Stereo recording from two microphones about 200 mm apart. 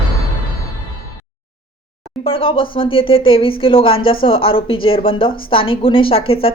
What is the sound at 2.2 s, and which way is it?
A woman's voice, 25° left (ahead or behind).